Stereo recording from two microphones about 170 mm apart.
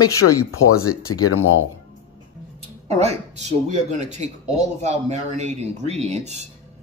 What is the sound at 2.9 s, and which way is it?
Speech, 40° right (ahead or behind).